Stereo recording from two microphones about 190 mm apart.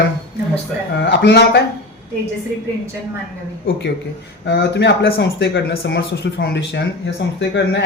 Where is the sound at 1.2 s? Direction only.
60° left (ahead or behind).